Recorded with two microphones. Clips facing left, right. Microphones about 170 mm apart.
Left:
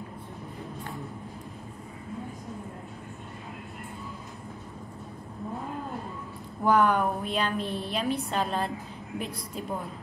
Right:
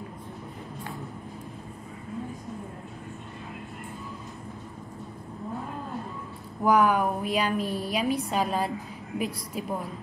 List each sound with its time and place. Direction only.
6.6 s a woman's voice: 10° right (ahead or behind)